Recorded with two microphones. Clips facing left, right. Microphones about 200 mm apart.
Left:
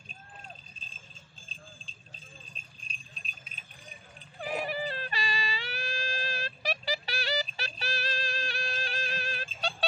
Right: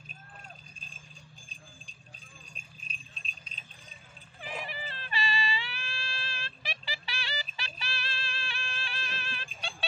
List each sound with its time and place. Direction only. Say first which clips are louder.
1.5 s jingle bell: left 2 dB; 15° right (ahead or behind)
4.4 s music: left 8 dB; 40° left (ahead or behind)